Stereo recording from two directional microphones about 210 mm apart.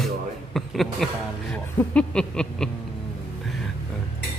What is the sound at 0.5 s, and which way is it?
A man's voice, centre (ahead or behind).